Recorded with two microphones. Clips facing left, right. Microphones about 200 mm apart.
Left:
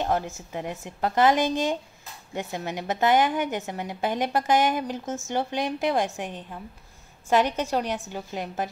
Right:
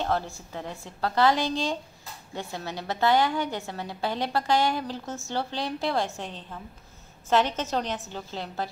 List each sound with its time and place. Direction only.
0.0 s a woman's voice: 15° left (ahead or behind)